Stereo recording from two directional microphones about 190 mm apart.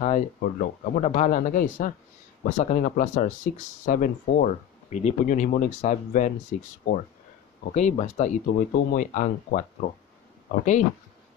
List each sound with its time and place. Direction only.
0.4 s speech: 45° left (ahead or behind)
7.7 s speech: 40° left (ahead or behind)